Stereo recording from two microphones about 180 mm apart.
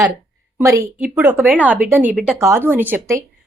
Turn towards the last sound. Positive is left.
turn(degrees=-15)  # may be behind; listen again after turning